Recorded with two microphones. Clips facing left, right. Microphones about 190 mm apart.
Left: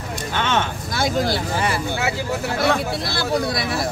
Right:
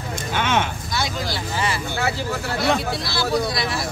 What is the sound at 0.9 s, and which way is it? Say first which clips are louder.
Speech: left 6 dB; 50° left (ahead or behind).